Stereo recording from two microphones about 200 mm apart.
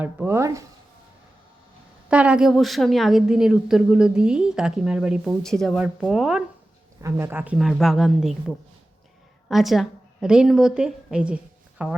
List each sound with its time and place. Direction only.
0.0 s speech: 10° right (ahead or behind)
2.0 s a woman's voice: 5° right (ahead or behind)